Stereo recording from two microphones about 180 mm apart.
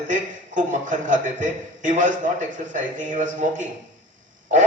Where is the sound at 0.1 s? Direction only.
45° right (ahead or behind).